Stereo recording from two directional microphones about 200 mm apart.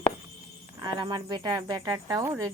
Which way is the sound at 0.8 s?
20° right (ahead or behind).